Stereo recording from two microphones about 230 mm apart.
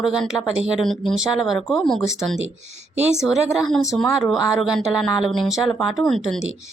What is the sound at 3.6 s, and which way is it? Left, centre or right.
Speech, centre.